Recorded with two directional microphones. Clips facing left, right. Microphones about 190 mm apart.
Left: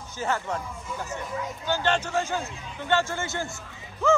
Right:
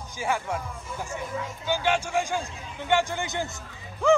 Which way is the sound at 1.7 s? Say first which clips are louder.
Even; 10° right (ahead or behind).